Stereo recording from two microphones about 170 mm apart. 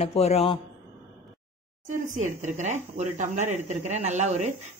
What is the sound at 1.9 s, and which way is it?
Speech, 50° right (ahead or behind).